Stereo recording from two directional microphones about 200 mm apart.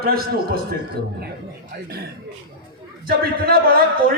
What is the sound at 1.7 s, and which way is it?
A man's voice, 50° right (ahead or behind).